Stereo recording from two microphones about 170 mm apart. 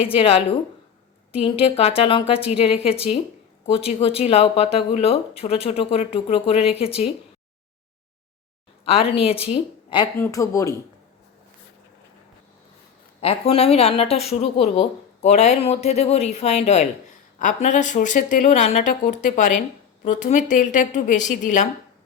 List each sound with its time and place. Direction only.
0.0 s a woman's voice: 35° left (ahead or behind)
8.8 s a woman's voice: 35° left (ahead or behind)
10.2 s speech: 15° left (ahead or behind)
13.2 s a woman's voice: 35° left (ahead or behind)